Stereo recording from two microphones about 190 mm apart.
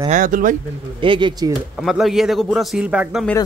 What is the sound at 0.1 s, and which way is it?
Speech, 45° right (ahead or behind).